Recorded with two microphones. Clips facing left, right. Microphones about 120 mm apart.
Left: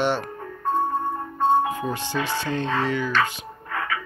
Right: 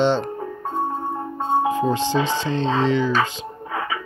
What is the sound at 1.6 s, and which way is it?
Speech, 20° right (ahead or behind).